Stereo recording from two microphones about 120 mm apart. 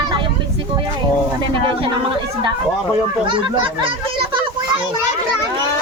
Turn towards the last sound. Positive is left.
turn(degrees=-45)  # may be behind; listen again after turning